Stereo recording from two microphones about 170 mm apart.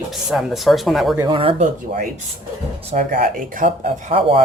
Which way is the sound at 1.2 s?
30° right (ahead or behind).